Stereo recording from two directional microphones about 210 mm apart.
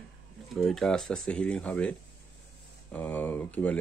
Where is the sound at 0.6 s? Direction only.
Centre (ahead or behind).